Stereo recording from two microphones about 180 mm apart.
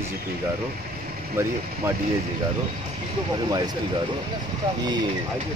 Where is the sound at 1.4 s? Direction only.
15° right (ahead or behind).